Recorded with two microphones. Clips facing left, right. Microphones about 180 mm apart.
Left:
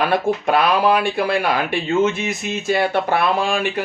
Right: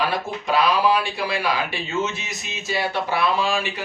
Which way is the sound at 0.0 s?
55° left (ahead or behind).